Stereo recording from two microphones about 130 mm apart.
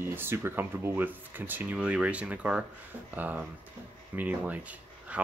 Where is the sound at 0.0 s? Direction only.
15° right (ahead or behind).